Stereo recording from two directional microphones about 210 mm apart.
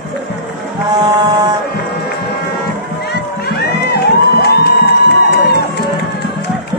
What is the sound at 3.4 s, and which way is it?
Music, 50° left (ahead or behind).